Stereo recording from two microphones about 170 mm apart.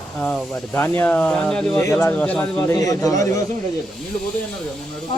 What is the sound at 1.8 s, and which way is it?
Speech, 15° left (ahead or behind).